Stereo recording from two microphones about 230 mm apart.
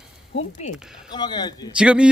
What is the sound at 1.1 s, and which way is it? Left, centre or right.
Speech, centre.